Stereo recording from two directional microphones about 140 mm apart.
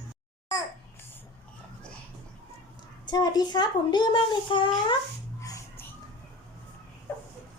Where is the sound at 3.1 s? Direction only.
30° left (ahead or behind).